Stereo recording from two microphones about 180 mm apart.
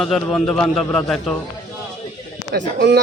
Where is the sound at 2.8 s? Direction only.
70° right (ahead or behind).